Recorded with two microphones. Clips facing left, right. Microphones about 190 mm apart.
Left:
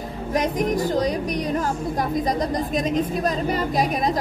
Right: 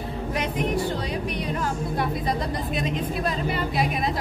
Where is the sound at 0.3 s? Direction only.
40° left (ahead or behind).